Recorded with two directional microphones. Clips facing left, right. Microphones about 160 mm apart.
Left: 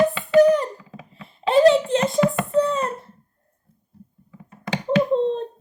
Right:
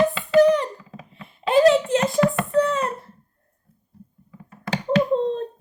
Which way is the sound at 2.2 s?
25° left (ahead or behind).